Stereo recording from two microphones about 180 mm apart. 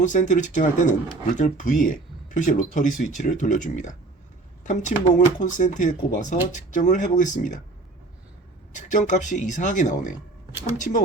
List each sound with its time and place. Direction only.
0.0 s speech: 45° left (ahead or behind)
8.7 s speech: 45° left (ahead or behind)